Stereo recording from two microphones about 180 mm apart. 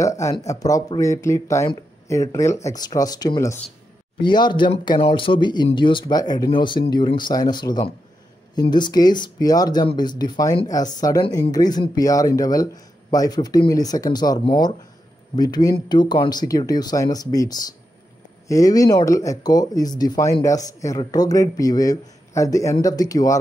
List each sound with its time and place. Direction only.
0.0 s speech: 15° left (ahead or behind)